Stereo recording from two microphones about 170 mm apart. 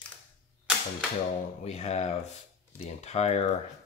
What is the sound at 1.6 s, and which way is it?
Speech, 40° left (ahead or behind).